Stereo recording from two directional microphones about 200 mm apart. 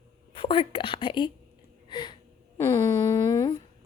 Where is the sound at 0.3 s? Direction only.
25° left (ahead or behind).